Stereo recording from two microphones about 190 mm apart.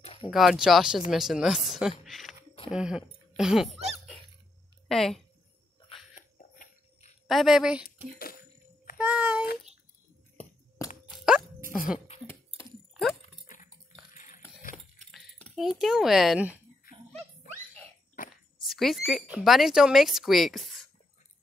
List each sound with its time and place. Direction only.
0.0 s a sound: 30° left (ahead or behind)
0.3 s speech: centre (ahead or behind)
4.8 s a woman's voice: centre (ahead or behind)
6.1 s a sound: 40° left (ahead or behind)
7.2 s speech: centre (ahead or behind)
7.8 s speech: 50° left (ahead or behind)
8.9 s child singing: 5° right (ahead or behind)
11.1 s dog: 5° right (ahead or behind)
12.1 s a sound: 35° left (ahead or behind)
14.1 s cutlery: 40° left (ahead or behind)
15.0 s speech: 5° left (ahead or behind)
18.3 s speech: centre (ahead or behind)